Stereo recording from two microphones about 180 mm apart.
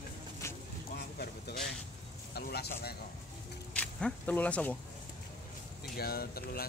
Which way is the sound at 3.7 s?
5° left (ahead or behind).